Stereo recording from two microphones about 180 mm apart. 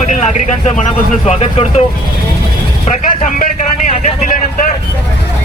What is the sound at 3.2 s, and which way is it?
Speech, 45° left (ahead or behind).